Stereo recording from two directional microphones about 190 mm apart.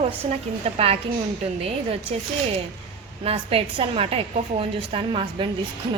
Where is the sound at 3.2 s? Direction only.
30° right (ahead or behind).